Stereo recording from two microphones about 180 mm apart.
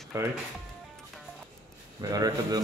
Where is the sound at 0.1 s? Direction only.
15° right (ahead or behind).